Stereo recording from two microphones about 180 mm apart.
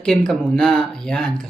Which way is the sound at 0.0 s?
5° left (ahead or behind).